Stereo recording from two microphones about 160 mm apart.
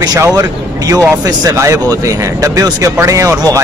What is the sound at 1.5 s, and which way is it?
Speech, 20° right (ahead or behind).